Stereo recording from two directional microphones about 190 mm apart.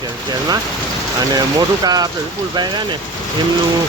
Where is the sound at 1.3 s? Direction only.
20° right (ahead or behind).